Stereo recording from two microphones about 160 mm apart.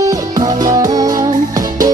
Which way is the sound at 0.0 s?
20° right (ahead or behind).